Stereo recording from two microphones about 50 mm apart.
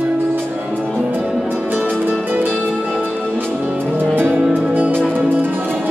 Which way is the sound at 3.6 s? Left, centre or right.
Right.